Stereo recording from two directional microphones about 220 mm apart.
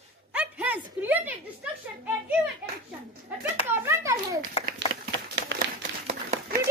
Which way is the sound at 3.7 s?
10° right (ahead or behind).